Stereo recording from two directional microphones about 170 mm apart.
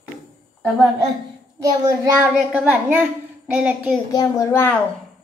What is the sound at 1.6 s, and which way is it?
Speech, 20° right (ahead or behind).